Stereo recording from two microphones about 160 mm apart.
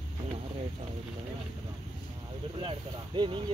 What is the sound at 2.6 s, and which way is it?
Speech, 30° right (ahead or behind).